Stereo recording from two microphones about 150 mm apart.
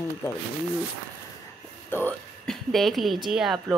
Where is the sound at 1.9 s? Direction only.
10° left (ahead or behind).